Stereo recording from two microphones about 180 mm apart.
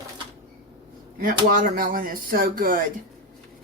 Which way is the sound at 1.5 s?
50° right (ahead or behind).